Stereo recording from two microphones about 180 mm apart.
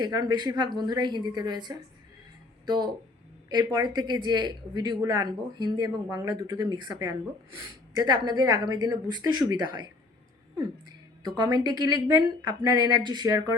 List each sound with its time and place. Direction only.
0.0 s speech: 20° right (ahead or behind)